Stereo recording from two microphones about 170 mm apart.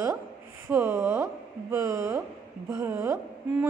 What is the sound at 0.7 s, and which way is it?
A woman's voice, 15° right (ahead or behind).